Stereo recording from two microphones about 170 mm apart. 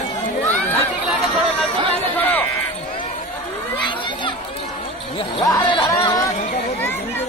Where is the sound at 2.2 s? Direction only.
10° left (ahead or behind).